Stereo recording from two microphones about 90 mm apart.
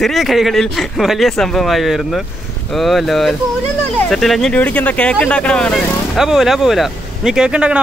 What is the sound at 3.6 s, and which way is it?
Speech, 20° left (ahead or behind).